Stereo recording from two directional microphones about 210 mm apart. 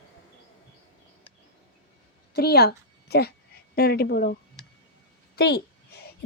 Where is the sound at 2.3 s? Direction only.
50° left (ahead or behind).